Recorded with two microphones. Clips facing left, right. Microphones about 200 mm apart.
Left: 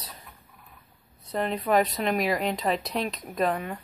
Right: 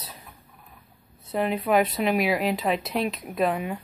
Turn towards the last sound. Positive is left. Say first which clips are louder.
# right 2 dB
turn(degrees=-5)  # may be behind; listen again after turning